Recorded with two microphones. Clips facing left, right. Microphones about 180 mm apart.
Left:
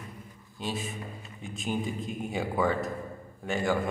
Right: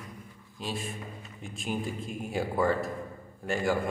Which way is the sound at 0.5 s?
Centre (ahead or behind).